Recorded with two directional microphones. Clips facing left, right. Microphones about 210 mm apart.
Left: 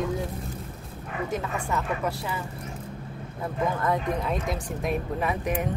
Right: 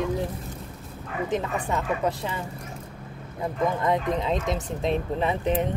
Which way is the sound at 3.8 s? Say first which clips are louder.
Right 2 dB; 20° right (ahead or behind).